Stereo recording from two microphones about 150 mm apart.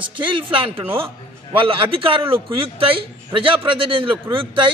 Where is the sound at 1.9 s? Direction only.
35° right (ahead or behind).